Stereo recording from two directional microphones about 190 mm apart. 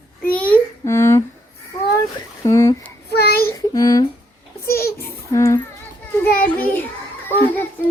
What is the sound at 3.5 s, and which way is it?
Speech, 20° left (ahead or behind).